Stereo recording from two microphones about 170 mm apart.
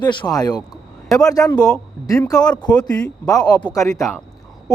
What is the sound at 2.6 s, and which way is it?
Speech, 25° left (ahead or behind).